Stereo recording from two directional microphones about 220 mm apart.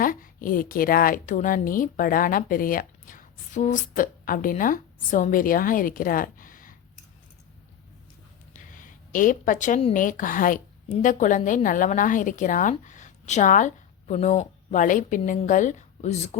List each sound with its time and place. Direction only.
0.0 s a woman's voice: 40° left (ahead or behind)
8.5 s speech: 35° left (ahead or behind)